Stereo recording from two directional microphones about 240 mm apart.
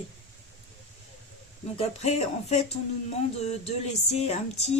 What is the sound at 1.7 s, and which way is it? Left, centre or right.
Speech, left.